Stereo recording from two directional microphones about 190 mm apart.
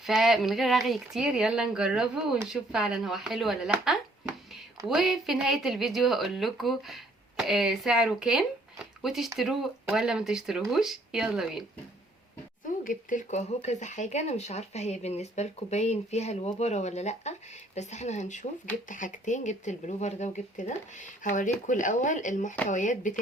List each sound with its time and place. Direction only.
0.0 s speech: centre (ahead or behind)
12.6 s speech: 45° left (ahead or behind)